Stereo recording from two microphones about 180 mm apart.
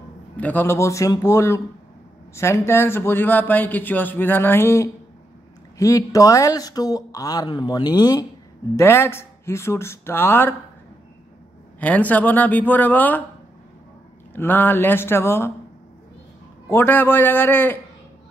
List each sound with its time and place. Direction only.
0.4 s speech: 10° left (ahead or behind)
11.8 s speech: 10° left (ahead or behind)
14.3 s speech: 10° left (ahead or behind)
16.6 s speech: 10° left (ahead or behind)